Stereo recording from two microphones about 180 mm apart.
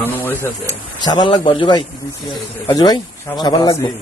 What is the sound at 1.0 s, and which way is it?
A man's voice, 25° left (ahead or behind).